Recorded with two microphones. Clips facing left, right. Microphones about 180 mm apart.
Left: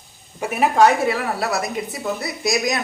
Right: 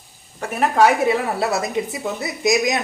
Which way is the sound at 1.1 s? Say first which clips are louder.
Right 2 dB; 25° right (ahead or behind).